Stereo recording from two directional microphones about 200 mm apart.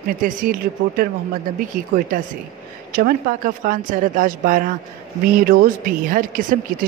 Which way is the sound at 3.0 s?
45° right (ahead or behind).